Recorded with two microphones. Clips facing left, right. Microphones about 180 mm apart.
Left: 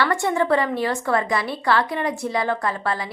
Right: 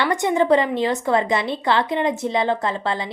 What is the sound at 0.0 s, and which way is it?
A woman's voice, 20° right (ahead or behind).